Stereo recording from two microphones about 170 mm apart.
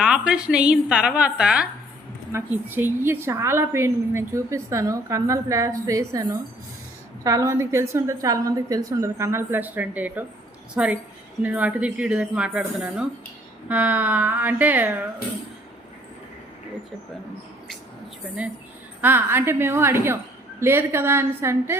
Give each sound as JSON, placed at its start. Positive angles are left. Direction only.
{"t": 0.0, "sound": "a woman's voice", "side_deg": -5}
{"t": 19.0, "sound": "a woman's voice", "side_deg": -15}